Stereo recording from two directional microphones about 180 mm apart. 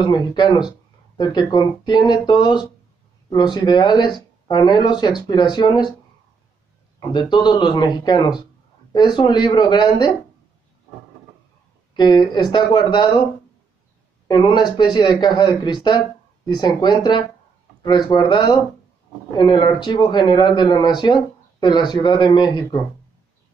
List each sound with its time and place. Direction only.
0.0 s speech: 25° left (ahead or behind)
7.1 s speech: 25° left (ahead or behind)
11.9 s speech: 25° left (ahead or behind)
14.2 s speech: 25° left (ahead or behind)